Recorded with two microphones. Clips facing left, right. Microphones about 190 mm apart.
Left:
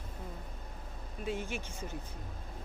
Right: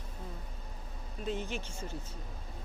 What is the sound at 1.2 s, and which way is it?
Speech, 10° left (ahead or behind).